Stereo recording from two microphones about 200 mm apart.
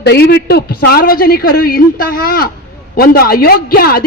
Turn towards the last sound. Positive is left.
turn(degrees=50)  # may be behind; listen again after turning